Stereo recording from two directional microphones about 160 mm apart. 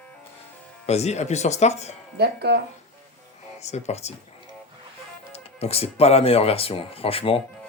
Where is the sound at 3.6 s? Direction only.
45° left (ahead or behind).